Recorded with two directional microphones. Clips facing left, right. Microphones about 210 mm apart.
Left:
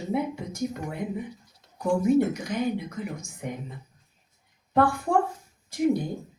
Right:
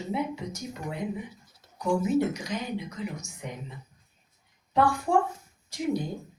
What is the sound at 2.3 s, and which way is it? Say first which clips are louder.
Speech: left 5 dB; 55° left (ahead or behind).